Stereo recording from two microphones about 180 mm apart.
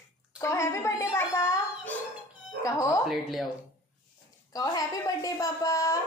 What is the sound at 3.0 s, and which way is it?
Speech, centre (ahead or behind).